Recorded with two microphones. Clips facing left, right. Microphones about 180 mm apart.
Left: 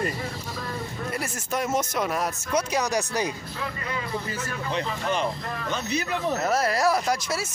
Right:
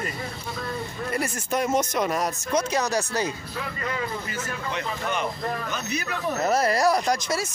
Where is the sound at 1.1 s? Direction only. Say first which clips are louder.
Right 4 dB; centre (ahead or behind).